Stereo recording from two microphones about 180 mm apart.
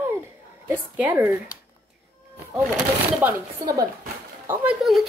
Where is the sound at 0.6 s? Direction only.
10° right (ahead or behind).